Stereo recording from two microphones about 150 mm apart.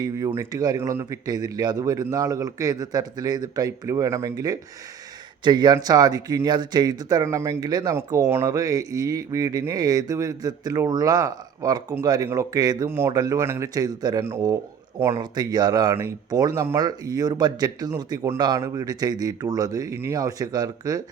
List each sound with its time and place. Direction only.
0.0 s speech: 20° right (ahead or behind)